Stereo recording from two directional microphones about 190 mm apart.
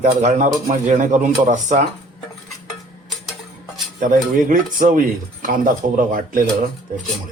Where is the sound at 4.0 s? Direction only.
45° right (ahead or behind).